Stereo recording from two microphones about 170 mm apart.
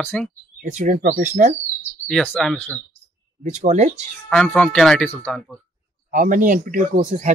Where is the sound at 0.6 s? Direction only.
45° right (ahead or behind).